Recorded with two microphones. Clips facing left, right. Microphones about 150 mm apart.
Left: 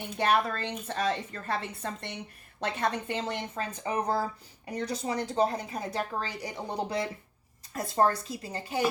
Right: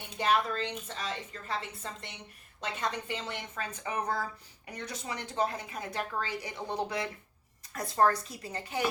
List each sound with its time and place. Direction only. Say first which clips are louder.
0.2 s a woman's voice: left 2 dB; 65° left (ahead or behind)
2.8 s a woman's voice: left 4 dB; 45° left (ahead or behind)
3.5 s speech: left 4 dB; 30° left (ahead or behind)